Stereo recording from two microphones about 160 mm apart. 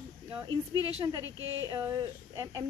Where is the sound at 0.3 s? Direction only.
25° right (ahead or behind).